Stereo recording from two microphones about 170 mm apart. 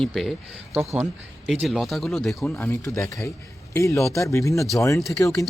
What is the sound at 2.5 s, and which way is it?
Speech, 15° left (ahead or behind).